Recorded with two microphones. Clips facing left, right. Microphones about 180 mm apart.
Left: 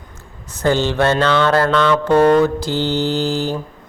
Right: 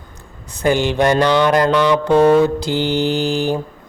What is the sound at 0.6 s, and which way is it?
Mantra, 15° right (ahead or behind).